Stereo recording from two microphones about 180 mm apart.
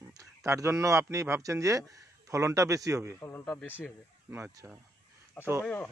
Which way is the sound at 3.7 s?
10° right (ahead or behind).